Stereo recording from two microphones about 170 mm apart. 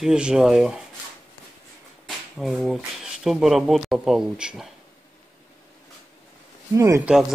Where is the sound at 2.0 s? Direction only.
Centre (ahead or behind).